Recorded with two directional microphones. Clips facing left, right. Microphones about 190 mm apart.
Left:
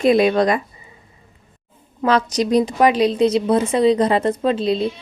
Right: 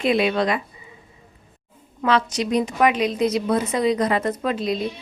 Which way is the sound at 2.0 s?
40° left (ahead or behind).